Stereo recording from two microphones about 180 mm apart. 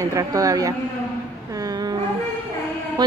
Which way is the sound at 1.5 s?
20° right (ahead or behind).